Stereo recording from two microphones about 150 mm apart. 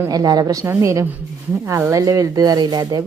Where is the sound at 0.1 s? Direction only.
25° right (ahead or behind).